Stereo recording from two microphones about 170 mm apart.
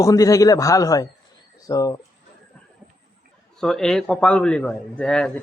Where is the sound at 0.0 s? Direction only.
20° left (ahead or behind).